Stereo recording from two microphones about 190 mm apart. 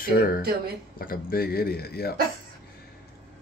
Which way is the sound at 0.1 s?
55° left (ahead or behind).